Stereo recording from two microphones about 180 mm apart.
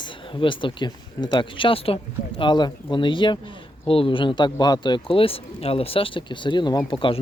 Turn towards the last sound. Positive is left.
turn(degrees=30)  # may be behind; listen again after turning